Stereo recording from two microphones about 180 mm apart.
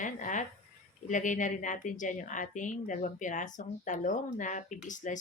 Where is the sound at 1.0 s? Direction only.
45° left (ahead or behind).